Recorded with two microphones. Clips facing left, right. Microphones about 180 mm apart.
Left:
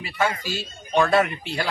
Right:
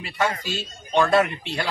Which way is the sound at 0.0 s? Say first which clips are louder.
Even; 5° left (ahead or behind).